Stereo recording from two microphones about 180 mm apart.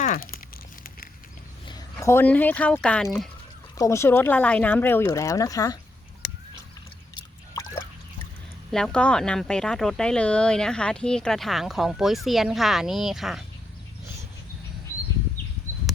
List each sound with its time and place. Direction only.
0.0 s crumpling: 50° left (ahead or behind)
1.6 s speech: 20° left (ahead or behind); by 3.1 s 5° left (ahead or behind)
3.8 s speech: 15° left (ahead or behind)
6.2 s a sound: 70° left (ahead or behind)
7.2 s a sound: 20° left (ahead or behind)
8.7 s speech: 5° left (ahead or behind)